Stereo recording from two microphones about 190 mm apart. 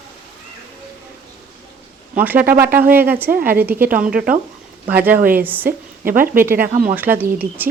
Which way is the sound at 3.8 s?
45° right (ahead or behind).